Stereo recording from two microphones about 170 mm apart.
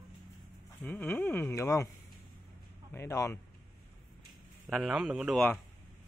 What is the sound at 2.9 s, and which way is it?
Speech, 15° left (ahead or behind).